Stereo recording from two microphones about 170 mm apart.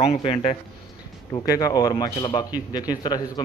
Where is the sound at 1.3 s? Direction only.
20° left (ahead or behind).